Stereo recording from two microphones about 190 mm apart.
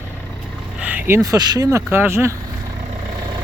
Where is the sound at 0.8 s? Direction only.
10° right (ahead or behind).